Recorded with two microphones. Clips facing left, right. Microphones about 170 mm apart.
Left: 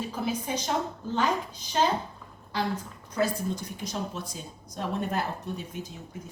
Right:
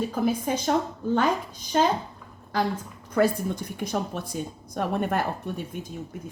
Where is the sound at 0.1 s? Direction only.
50° right (ahead or behind).